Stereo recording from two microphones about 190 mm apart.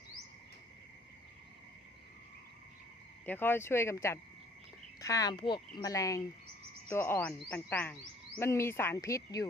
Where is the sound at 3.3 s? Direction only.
10° left (ahead or behind).